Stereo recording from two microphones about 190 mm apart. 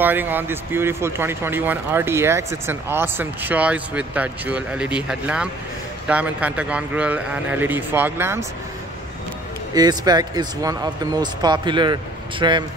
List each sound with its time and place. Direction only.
0.0 s speech: 10° right (ahead or behind)
9.8 s speech: 20° right (ahead or behind)